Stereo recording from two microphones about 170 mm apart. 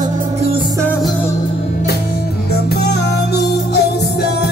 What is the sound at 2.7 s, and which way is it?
Music, 75° left (ahead or behind).